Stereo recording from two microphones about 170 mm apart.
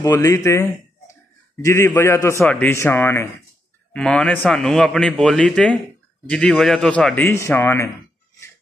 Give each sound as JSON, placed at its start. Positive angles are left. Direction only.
{"t": 0.0, "sound": "a man's voice", "side_deg": 20}